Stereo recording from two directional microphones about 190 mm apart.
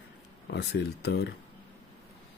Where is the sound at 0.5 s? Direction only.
60° left (ahead or behind).